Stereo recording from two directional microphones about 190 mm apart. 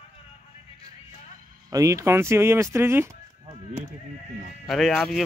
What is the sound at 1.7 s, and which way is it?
Speech, 15° right (ahead or behind).